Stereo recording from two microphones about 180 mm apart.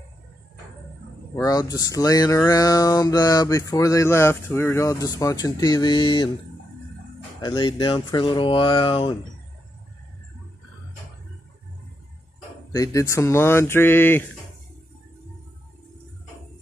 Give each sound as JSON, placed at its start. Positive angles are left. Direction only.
{"t": 1.3, "sound": "speech", "side_deg": 20}
{"t": 7.4, "sound": "speech", "side_deg": 25}
{"t": 12.7, "sound": "speech", "side_deg": 20}